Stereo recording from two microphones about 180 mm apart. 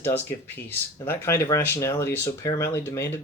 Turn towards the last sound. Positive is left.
turn(degrees=15)  # may be behind; listen again after turning